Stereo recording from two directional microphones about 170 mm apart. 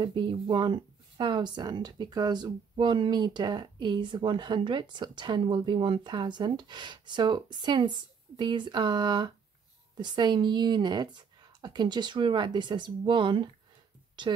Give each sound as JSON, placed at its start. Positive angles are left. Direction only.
{"t": 0.0, "sound": "speech", "side_deg": -25}